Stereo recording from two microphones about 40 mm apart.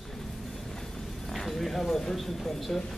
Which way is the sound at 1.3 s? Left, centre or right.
Centre.